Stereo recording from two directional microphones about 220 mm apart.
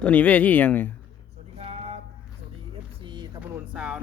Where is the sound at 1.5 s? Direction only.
30° right (ahead or behind).